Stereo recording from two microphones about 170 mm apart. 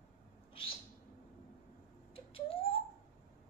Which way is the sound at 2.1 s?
35° left (ahead or behind).